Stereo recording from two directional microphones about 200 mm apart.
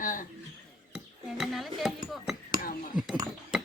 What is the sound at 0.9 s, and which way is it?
Speech, centre (ahead or behind).